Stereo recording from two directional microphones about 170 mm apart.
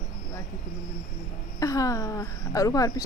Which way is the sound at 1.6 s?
20° left (ahead or behind).